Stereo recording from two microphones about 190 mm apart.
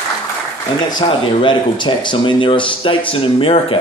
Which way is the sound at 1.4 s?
25° left (ahead or behind).